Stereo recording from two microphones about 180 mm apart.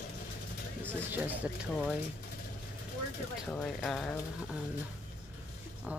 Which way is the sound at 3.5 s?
5° left (ahead or behind).